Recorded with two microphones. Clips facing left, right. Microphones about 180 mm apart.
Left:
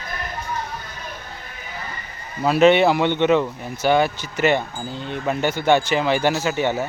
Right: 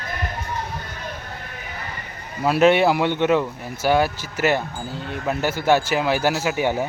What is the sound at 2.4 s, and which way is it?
Speech, 5° right (ahead or behind).